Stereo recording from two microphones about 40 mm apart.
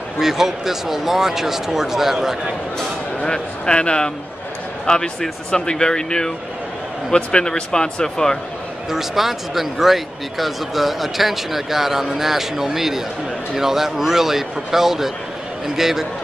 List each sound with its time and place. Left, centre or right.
0.2 s speech: centre
3.2 s speech: left
8.9 s speech: centre